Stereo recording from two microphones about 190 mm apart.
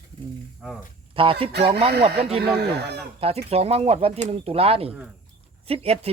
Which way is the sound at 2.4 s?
60° right (ahead or behind).